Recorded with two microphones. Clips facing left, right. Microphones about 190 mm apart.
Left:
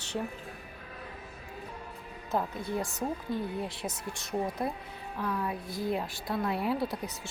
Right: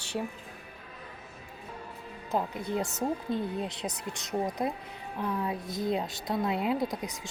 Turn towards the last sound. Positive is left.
turn(degrees=-15)  # may be behind; listen again after turning